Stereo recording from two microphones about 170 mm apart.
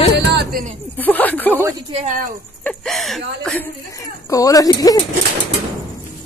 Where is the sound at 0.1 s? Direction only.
80° right; by 0.7 s 55° right (ahead or behind).